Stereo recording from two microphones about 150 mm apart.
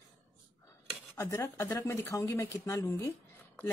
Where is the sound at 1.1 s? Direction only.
20° left (ahead or behind).